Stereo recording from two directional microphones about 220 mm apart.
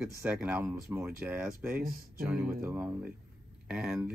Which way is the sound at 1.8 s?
40° right (ahead or behind).